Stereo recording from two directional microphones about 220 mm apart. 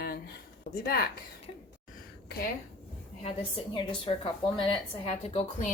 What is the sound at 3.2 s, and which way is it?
A woman's voice, 25° left (ahead or behind).